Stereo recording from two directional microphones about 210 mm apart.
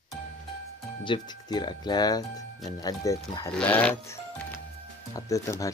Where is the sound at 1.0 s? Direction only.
20° left (ahead or behind).